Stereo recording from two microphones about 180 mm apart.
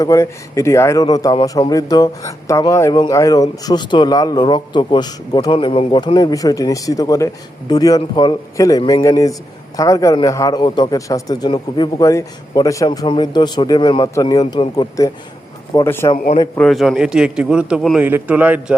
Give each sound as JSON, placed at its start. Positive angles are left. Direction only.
{"t": 0.0, "sound": "a man's voice", "side_deg": 15}
{"t": 16.6, "sound": "a man's voice", "side_deg": 0}